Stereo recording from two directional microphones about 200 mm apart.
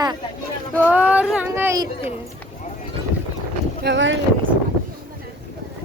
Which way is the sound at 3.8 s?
65° right (ahead or behind).